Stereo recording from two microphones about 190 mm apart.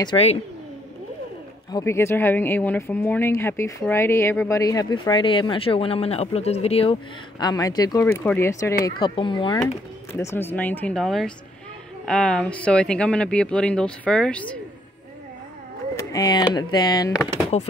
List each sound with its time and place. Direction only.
0.0 s speech: 30° left (ahead or behind)
1.7 s speech: 15° left (ahead or behind)
8.8 s speech: 25° left (ahead or behind)
10.1 s speech: 10° left (ahead or behind)
16.0 s speech: 20° left (ahead or behind)